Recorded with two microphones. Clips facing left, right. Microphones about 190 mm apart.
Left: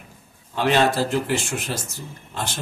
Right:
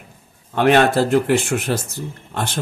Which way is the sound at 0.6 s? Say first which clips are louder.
Right 5 dB; 60° right (ahead or behind).